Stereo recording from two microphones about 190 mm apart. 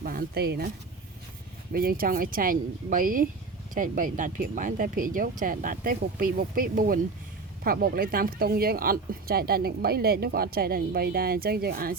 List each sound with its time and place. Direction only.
0.0 s speech: 50° right (ahead or behind)
1.7 s speech: 50° right (ahead or behind)